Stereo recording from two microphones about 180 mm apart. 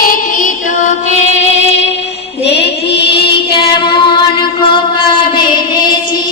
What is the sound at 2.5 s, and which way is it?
Music, 70° left (ahead or behind).